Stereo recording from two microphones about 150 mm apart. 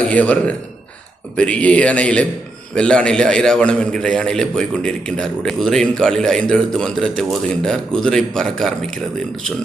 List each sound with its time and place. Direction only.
0.0 s a man's voice: 10° left (ahead or behind)